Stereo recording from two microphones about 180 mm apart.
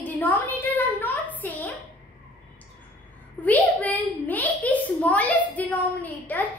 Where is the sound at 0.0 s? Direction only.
10° left (ahead or behind).